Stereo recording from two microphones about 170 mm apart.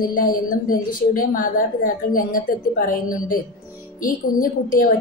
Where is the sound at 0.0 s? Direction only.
55° left (ahead or behind).